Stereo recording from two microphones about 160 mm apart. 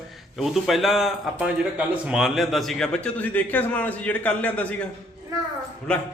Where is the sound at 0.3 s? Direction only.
Centre (ahead or behind).